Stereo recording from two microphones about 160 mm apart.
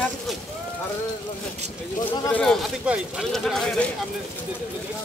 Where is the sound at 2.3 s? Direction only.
5° left (ahead or behind).